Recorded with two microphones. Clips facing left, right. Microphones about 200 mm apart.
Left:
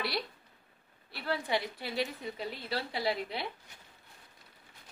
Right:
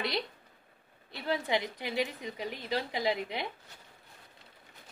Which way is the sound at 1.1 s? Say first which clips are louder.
Right 2 dB; 20° right (ahead or behind).